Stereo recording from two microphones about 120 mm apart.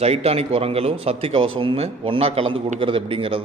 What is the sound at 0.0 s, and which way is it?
A man's voice, 60° right (ahead or behind).